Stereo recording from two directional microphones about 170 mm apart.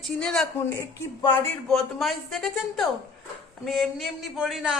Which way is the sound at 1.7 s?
Centre (ahead or behind).